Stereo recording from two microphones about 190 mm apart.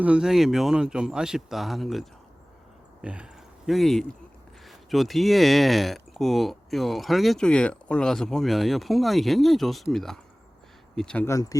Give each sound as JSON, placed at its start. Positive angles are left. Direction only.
{"t": 0.0, "sound": "speech", "side_deg": -5}
{"t": 11.3, "sound": "speech", "side_deg": 15}